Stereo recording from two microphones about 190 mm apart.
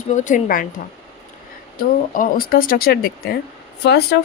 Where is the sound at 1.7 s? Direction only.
50° left (ahead or behind).